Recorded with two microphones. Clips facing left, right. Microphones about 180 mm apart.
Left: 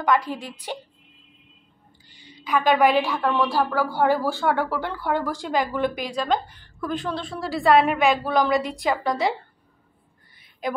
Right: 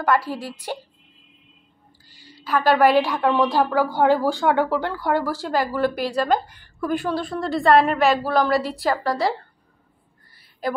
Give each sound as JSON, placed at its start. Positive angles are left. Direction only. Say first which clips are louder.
{"t": 0.0, "sound": "a woman's voice", "louder": "right 1 dB", "side_deg": -5}
{"t": 2.0, "sound": "a sound", "louder": "even", "side_deg": 20}
{"t": 2.4, "sound": "a woman's voice", "louder": "right 2 dB", "side_deg": 15}
{"t": 2.9, "sound": "a woman's voice", "louder": "right 3 dB", "side_deg": -10}